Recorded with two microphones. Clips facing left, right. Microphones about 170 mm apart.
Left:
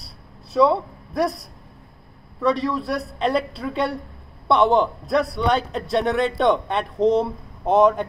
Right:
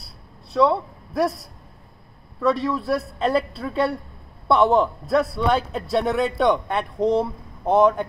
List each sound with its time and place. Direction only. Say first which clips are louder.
0.5 s a man's voice: left 1 dB; centre (ahead or behind)